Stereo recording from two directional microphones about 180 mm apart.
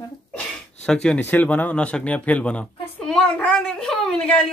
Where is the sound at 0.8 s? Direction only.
5° left (ahead or behind).